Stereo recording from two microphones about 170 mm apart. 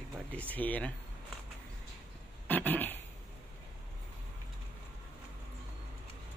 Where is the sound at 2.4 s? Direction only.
10° left (ahead or behind).